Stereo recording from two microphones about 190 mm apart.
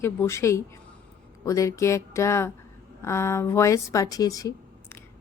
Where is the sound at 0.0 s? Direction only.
15° left (ahead or behind).